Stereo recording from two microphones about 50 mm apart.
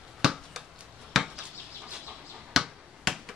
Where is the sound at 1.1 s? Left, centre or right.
Centre.